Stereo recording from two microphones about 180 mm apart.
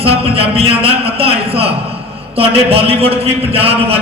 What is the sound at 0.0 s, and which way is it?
A man's voice, 30° right (ahead or behind).